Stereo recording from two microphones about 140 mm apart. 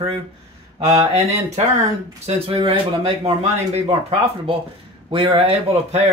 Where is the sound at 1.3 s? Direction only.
50° right (ahead or behind).